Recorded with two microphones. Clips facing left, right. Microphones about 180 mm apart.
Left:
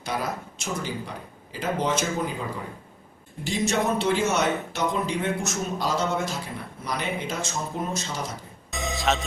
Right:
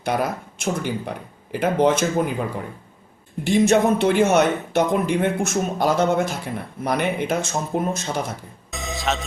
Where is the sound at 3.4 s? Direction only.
55° right (ahead or behind).